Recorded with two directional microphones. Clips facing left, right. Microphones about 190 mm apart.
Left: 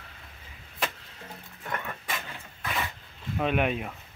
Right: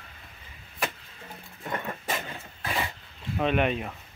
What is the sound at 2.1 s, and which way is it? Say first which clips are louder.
Dog: right 4 dB; 30° right (ahead or behind).